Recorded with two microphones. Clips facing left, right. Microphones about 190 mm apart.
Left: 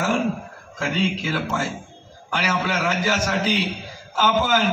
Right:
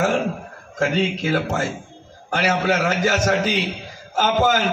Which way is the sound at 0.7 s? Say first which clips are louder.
Right 3 dB; 45° right (ahead or behind).